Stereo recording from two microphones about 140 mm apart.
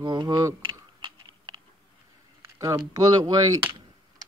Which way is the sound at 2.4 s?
20° right (ahead or behind).